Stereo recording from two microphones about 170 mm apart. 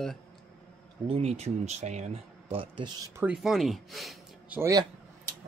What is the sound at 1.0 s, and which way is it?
Speech, 35° right (ahead or behind).